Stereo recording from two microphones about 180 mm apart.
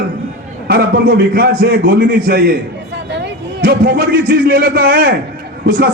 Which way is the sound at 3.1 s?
65° right (ahead or behind).